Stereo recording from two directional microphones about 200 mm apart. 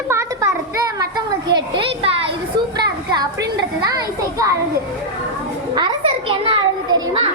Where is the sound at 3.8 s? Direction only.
20° right (ahead or behind).